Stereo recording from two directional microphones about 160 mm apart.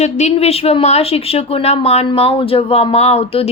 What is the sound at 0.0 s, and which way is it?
A woman's voice, 45° left (ahead or behind).